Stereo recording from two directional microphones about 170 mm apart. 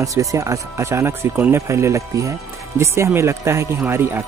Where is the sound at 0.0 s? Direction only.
20° right (ahead or behind).